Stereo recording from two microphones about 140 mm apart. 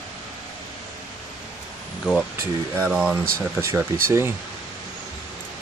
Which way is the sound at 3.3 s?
15° right (ahead or behind).